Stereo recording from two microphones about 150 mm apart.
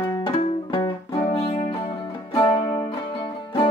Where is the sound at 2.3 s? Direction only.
25° left (ahead or behind).